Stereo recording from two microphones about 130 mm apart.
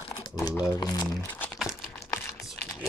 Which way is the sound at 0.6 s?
30° left (ahead or behind).